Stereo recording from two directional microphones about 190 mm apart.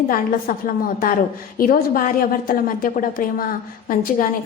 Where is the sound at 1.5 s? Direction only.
50° left (ahead or behind).